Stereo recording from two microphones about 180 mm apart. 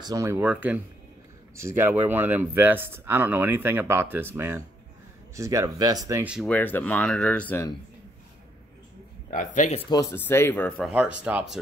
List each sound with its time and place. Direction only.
0.0 s speech: 15° right (ahead or behind)
6.2 s speech: 5° right (ahead or behind)
6.5 s speech: 10° left (ahead or behind)
9.3 s speech: 45° left (ahead or behind)
9.8 s speech: 20° left (ahead or behind)
10.9 s speech: 5° right (ahead or behind)